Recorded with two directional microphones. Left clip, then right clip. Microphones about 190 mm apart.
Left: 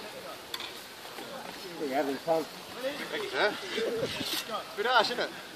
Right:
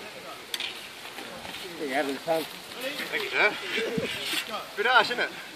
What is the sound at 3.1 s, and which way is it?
Speech, 10° left (ahead or behind).